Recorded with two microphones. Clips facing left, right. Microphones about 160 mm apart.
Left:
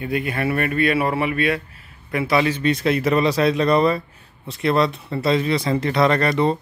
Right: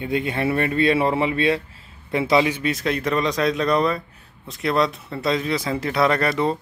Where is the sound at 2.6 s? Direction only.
Centre (ahead or behind).